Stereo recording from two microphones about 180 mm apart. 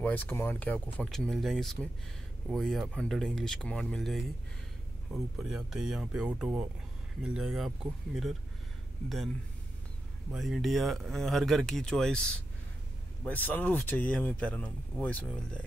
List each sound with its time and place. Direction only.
0.0 s speech: 10° left (ahead or behind)
10.3 s speech: centre (ahead or behind)